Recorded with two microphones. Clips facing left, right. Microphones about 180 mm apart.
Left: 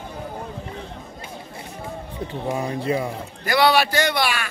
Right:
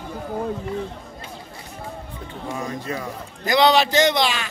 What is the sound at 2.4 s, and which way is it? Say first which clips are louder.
Speech: left 3 dB; 25° left (ahead or behind).